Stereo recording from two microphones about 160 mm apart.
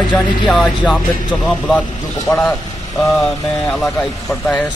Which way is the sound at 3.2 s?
Centre (ahead or behind).